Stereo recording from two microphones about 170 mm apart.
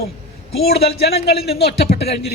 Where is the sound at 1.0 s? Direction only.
70° left (ahead or behind).